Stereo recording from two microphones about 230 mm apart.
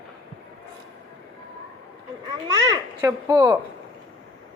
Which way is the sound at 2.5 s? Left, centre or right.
Centre.